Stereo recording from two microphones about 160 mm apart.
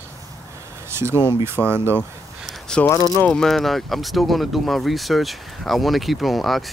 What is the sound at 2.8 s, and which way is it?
Speech, 10° left (ahead or behind).